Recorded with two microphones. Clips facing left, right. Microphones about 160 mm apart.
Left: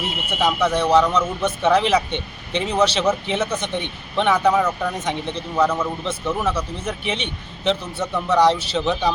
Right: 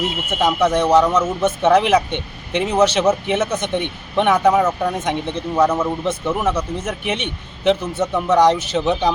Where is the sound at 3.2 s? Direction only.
50° right (ahead or behind).